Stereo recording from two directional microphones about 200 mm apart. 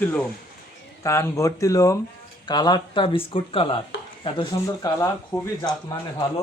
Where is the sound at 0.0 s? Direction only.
5° left (ahead or behind).